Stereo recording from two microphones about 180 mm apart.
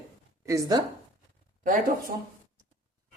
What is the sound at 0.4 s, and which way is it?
Speech, 15° right (ahead or behind).